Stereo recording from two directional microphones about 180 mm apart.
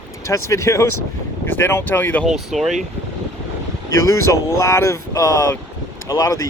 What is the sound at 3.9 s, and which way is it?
Speech, 15° left (ahead or behind).